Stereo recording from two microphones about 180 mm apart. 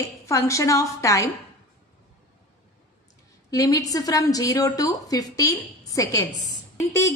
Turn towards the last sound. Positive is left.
turn(degrees=15)  # may be behind; listen again after turning